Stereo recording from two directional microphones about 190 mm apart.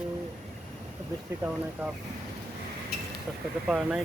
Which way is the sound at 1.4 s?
10° right (ahead or behind).